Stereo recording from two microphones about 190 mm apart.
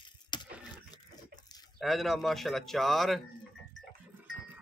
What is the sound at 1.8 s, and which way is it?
Speech, centre (ahead or behind).